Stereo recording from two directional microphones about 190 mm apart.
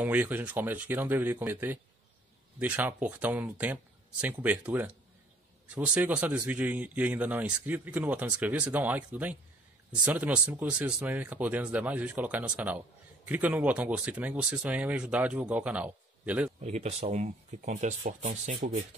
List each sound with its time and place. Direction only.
0.0 s speech: 10° right (ahead or behind)
5.9 s speech: 10° right (ahead or behind)
16.6 s speech: 35° right (ahead or behind)